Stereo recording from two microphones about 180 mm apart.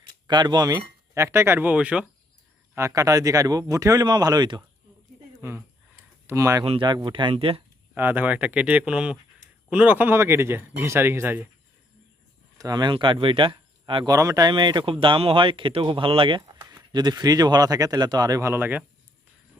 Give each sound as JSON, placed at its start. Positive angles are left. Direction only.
{"t": 0.3, "sound": "speech", "side_deg": -25}
{"t": 2.7, "sound": "speech", "side_deg": -15}
{"t": 7.9, "sound": "speech", "side_deg": -10}
{"t": 12.5, "sound": "speech", "side_deg": -20}